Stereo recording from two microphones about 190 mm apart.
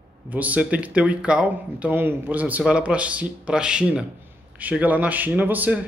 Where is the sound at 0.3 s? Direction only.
10° right (ahead or behind).